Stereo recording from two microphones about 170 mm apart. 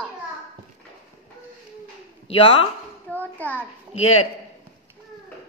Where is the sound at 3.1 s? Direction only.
10° left (ahead or behind).